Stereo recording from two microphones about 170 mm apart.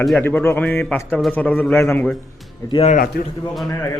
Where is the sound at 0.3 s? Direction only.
10° left (ahead or behind).